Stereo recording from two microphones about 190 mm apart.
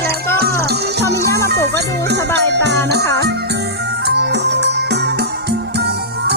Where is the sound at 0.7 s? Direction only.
60° right (ahead or behind).